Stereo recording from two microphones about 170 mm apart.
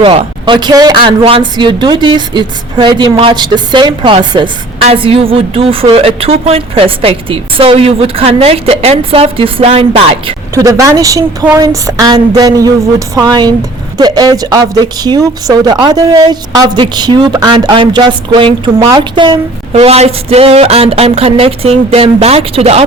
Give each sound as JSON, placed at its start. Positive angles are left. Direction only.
{"t": 0.0, "sound": "a woman's voice", "side_deg": -30}
{"t": 10.5, "sound": "speech", "side_deg": -20}
{"t": 19.7, "sound": "a woman's voice", "side_deg": -40}